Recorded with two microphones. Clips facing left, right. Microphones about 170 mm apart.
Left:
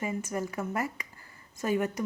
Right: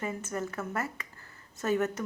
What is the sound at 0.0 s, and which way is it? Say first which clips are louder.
A woman's voice: left 2 dB; 10° left (ahead or behind).